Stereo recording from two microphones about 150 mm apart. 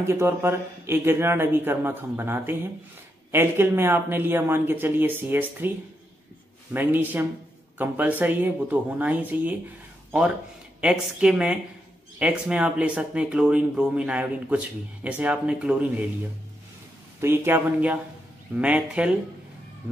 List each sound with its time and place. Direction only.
0.0 s speech: 15° right (ahead or behind)
6.7 s speech: 15° right (ahead or behind)
10.8 s speech: 5° right (ahead or behind)
17.2 s speech: 15° right (ahead or behind)